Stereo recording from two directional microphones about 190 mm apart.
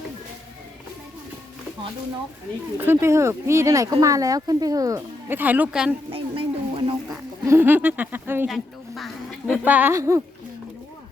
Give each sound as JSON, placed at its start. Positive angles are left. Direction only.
{"t": 2.7, "sound": "speech", "side_deg": -10}
{"t": 6.1, "sound": "a sound", "side_deg": -30}
{"t": 7.1, "sound": "speech", "side_deg": -10}
{"t": 8.4, "sound": "speech", "side_deg": 0}